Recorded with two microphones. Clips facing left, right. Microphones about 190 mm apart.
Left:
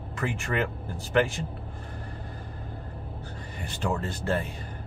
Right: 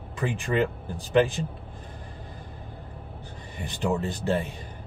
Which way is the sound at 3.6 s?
20° right (ahead or behind).